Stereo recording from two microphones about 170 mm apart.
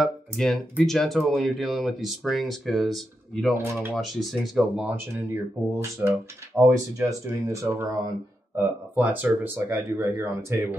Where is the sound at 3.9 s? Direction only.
Centre (ahead or behind).